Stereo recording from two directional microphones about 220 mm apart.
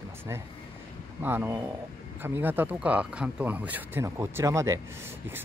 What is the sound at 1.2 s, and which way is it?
A man's voice, 10° right (ahead or behind).